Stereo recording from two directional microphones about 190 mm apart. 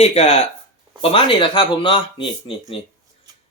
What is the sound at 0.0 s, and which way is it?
Speech, 35° left (ahead or behind).